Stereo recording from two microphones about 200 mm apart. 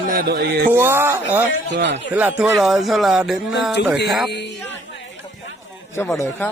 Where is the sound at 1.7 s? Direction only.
60° right (ahead or behind).